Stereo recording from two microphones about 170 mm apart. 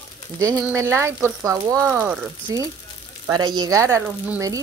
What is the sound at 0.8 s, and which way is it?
Speech, 15° right (ahead or behind).